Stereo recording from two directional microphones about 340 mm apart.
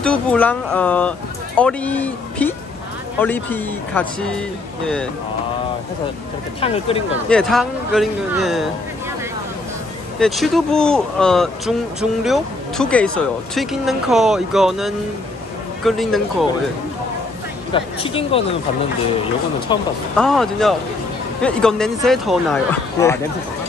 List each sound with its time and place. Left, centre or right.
0.0 s speech: centre
6.6 s speech: centre
7.2 s speech: centre
10.1 s speech: centre
17.7 s speech: centre
19.7 s speech: centre
20.2 s speech: centre